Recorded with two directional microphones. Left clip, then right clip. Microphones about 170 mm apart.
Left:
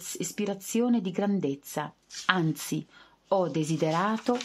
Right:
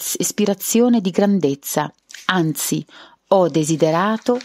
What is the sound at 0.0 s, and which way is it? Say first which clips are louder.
A woman's voice: right 13 dB; 50° right (ahead or behind).